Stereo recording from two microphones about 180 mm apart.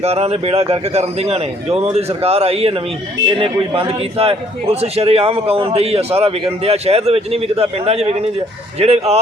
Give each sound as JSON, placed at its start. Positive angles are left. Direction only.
{"t": 0.0, "sound": "a man's voice", "side_deg": -35}